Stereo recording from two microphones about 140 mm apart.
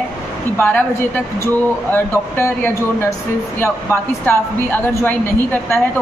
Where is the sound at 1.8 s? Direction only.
15° left (ahead or behind).